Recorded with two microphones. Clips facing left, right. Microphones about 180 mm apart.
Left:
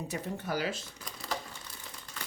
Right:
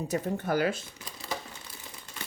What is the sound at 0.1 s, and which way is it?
Speech, 50° right (ahead or behind).